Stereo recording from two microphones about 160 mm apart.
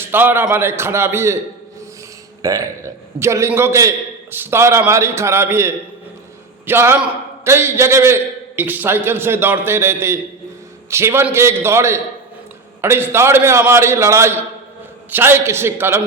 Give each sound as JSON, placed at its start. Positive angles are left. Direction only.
{"t": 0.1, "sound": "a man's voice", "side_deg": -10}
{"t": 2.4, "sound": "a man's voice", "side_deg": -20}